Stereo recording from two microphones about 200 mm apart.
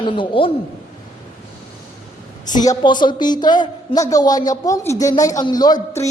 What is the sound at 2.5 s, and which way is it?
A man's voice, 20° left (ahead or behind).